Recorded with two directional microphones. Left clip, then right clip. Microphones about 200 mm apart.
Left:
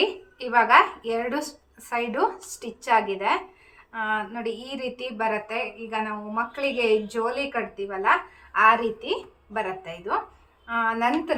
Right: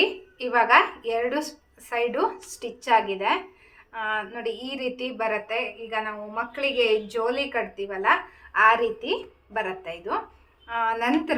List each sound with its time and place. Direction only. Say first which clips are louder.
0.0 s a woman's voice: right 1 dB; centre (ahead or behind)